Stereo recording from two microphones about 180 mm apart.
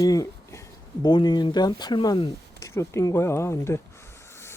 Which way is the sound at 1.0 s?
25° left (ahead or behind).